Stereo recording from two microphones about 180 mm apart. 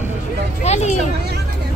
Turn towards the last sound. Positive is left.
turn(degrees=40)  # may be behind; listen again after turning